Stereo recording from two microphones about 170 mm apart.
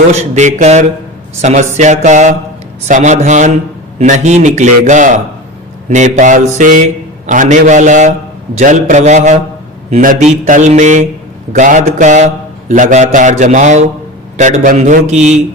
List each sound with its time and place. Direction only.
0.1 s mantra: 40° right (ahead or behind)